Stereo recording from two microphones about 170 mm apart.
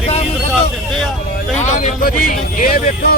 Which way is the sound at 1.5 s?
45° left (ahead or behind).